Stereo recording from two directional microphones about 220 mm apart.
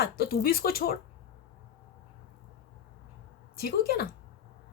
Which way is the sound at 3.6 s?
45° left (ahead or behind).